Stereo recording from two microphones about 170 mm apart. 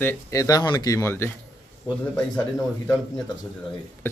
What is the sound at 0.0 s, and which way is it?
Speech, 20° left (ahead or behind).